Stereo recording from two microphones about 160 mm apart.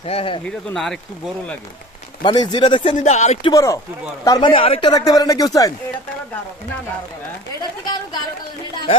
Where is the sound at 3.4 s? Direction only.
20° left (ahead or behind); by 4.9 s 35° left (ahead or behind).